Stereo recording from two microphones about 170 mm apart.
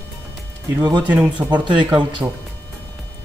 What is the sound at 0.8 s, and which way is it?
Speech, 25° right (ahead or behind).